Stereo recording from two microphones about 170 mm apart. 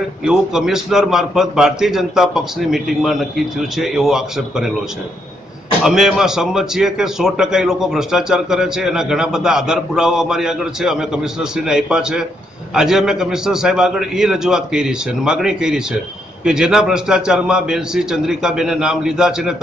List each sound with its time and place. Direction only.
0.2 s a man's voice: 5° right (ahead or behind)
5.9 s a man's voice: centre (ahead or behind)